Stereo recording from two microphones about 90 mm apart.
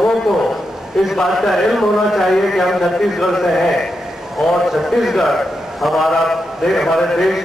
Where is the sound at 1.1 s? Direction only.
Centre (ahead or behind).